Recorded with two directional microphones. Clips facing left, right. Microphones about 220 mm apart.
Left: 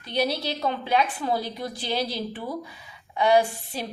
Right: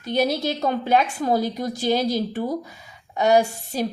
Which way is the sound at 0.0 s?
45° right (ahead or behind).